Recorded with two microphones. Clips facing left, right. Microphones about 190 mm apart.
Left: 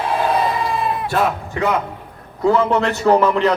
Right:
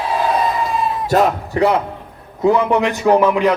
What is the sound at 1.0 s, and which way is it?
Speech, 35° right (ahead or behind).